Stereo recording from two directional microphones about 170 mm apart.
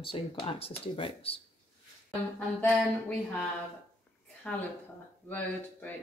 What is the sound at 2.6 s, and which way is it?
Speech, 10° left (ahead or behind).